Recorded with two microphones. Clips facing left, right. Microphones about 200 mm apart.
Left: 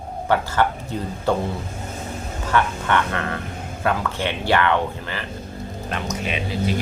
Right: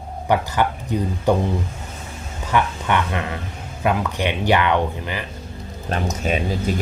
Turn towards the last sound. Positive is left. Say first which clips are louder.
# right 2 dB
turn(degrees=-45)  # may be behind; listen again after turning